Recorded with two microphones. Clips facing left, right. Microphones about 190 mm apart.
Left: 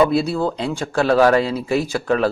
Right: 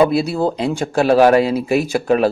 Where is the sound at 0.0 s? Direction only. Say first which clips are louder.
Right 2 dB; 10° right (ahead or behind).